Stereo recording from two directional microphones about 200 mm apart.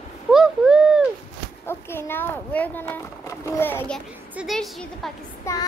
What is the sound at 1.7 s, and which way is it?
Speech, 10° left (ahead or behind).